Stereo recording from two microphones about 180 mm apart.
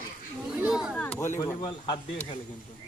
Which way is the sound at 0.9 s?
5° left (ahead or behind).